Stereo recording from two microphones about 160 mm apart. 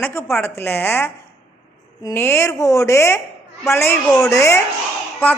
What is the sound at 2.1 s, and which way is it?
A man's voice, 15° left (ahead or behind).